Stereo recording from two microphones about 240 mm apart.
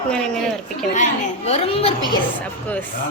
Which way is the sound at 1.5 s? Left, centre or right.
Left.